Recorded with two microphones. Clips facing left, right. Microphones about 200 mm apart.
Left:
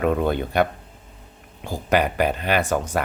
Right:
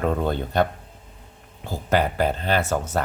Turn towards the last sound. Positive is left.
turn(degrees=15)  # may be behind; listen again after turning